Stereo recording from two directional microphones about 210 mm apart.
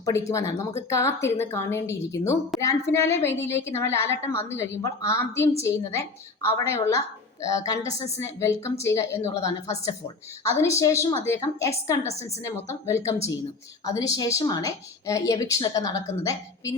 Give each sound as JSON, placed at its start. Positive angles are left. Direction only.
{"t": 0.0, "sound": "speech", "side_deg": 15}